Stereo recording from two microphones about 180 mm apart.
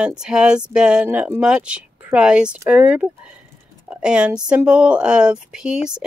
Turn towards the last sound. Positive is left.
turn(degrees=-5)  # may be behind; listen again after turning